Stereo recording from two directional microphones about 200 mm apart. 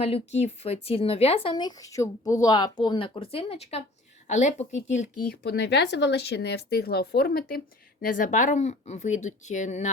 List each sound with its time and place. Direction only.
0.0 s speech: 30° left (ahead or behind)
5.3 s speech: 55° left (ahead or behind); by 9.9 s 35° left (ahead or behind)